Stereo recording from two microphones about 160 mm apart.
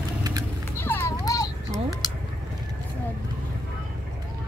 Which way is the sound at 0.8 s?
15° left (ahead or behind).